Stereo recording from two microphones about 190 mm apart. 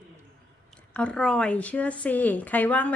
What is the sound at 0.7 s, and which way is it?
Speech, 5° left (ahead or behind).